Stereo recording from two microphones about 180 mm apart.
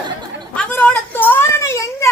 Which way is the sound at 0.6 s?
10° left (ahead or behind).